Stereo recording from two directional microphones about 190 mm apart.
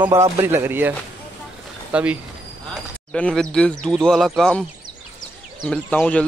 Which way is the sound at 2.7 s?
5° left (ahead or behind).